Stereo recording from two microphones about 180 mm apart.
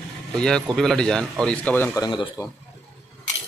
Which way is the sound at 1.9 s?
25° left (ahead or behind).